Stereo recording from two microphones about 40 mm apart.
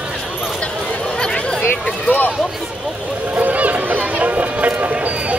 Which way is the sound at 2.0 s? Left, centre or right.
Left.